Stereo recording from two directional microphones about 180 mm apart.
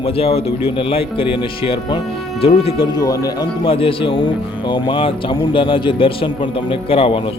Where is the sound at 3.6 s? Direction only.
30° left (ahead or behind).